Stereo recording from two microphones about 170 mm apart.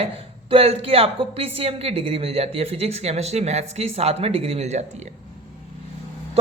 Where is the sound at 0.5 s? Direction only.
35° right (ahead or behind).